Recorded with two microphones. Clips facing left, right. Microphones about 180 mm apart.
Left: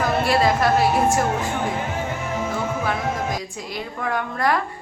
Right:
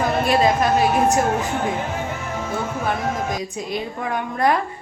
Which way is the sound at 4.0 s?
20° right (ahead or behind).